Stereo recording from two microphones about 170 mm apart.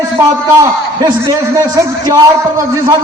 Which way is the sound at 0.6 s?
20° right (ahead or behind).